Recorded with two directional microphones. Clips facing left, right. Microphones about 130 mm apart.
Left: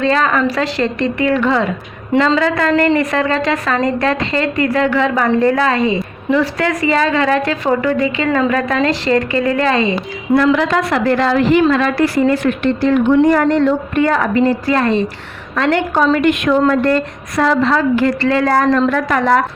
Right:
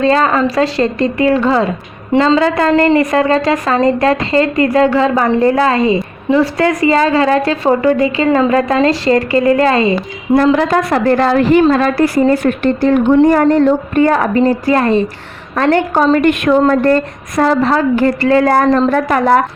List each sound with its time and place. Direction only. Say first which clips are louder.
0.0 s a woman's voice: right 3 dB; 35° right (ahead or behind)